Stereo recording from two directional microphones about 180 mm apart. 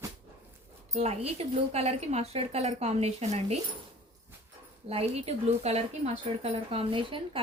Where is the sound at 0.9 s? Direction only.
35° right (ahead or behind).